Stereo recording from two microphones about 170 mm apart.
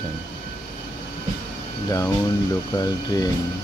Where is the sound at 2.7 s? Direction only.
25° left (ahead or behind).